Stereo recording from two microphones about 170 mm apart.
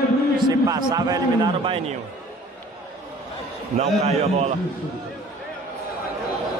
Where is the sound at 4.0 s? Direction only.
40° right (ahead or behind).